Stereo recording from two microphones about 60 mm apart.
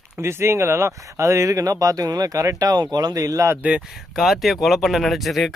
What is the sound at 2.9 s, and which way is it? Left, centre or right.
Speech, right.